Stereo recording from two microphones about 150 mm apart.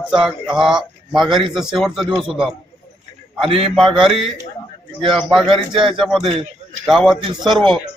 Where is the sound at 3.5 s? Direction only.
40° right (ahead or behind).